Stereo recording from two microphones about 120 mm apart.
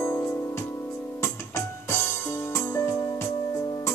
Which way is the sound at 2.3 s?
20° left (ahead or behind).